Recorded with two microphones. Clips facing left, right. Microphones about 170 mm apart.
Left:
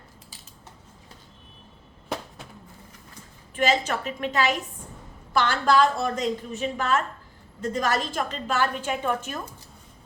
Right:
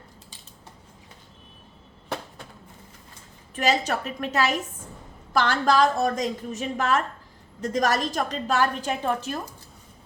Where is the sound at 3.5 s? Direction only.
40° right (ahead or behind).